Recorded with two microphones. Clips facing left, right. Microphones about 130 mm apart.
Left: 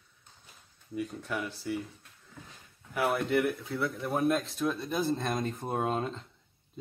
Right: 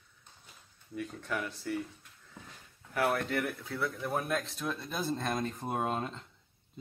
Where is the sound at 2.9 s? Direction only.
5° left (ahead or behind).